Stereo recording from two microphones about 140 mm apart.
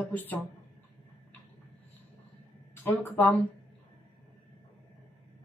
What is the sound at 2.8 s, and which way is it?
Speech, 15° left (ahead or behind).